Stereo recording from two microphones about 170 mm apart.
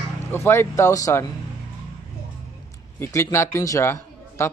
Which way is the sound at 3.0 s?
20° left (ahead or behind).